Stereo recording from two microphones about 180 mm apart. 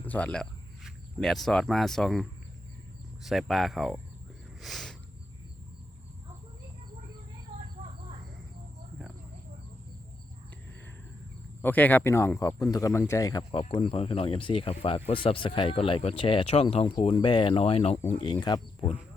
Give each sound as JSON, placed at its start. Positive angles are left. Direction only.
{"t": 0.0, "sound": "speech", "side_deg": 10}
{"t": 3.2, "sound": "speech", "side_deg": 0}
{"t": 4.6, "sound": "a sound", "side_deg": 0}
{"t": 11.6, "sound": "speech", "side_deg": 10}
{"t": 13.5, "sound": "speech", "side_deg": 30}